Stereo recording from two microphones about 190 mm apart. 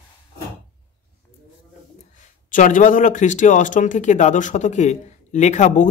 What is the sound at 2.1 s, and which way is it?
Speech, 45° left (ahead or behind).